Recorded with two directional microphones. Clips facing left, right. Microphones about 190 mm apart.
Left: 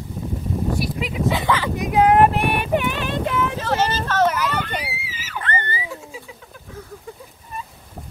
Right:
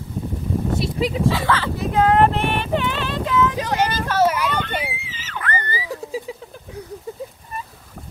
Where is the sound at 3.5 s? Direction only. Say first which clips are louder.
Even; 15° right (ahead or behind).